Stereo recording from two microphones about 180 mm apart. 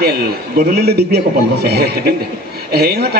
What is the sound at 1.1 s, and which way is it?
A man's voice, 60° right (ahead or behind).